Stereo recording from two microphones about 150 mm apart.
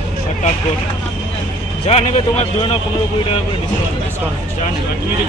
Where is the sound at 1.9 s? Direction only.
45° left (ahead or behind).